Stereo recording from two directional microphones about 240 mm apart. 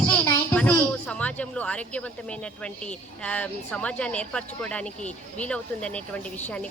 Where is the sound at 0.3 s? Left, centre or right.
Centre.